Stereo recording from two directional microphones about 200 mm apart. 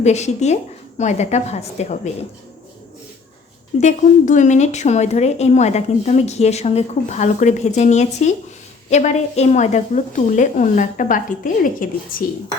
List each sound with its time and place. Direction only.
0.0 s speech: 35° left (ahead or behind)
3.8 s a woman's voice: 35° left (ahead or behind)